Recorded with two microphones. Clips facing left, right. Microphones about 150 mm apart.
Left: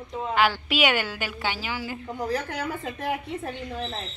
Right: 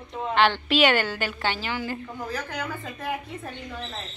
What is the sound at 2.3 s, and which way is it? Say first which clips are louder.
Speech: left 3 dB; 25° left (ahead or behind).